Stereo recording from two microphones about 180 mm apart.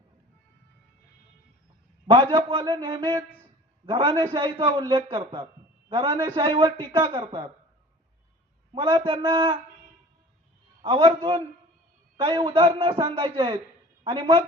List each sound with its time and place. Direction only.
2.0 s a man's voice: 25° right (ahead or behind)
8.7 s a man's voice: 30° right (ahead or behind)
10.9 s a man's voice: 25° right (ahead or behind)